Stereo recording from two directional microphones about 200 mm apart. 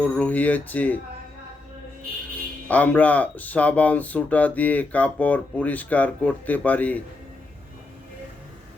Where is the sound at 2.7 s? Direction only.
10° left (ahead or behind).